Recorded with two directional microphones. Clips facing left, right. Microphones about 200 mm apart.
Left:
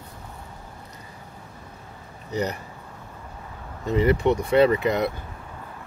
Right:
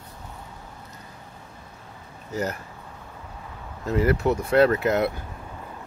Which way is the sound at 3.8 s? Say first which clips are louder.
Left 2 dB; centre (ahead or behind).